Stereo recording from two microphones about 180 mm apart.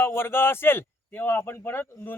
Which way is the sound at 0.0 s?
15° left (ahead or behind).